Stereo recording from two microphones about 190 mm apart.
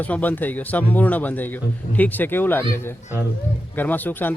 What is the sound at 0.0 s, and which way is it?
Speech, 10° left (ahead or behind).